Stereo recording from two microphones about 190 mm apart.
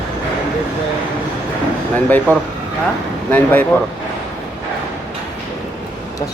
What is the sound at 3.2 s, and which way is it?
Speech, 10° left (ahead or behind).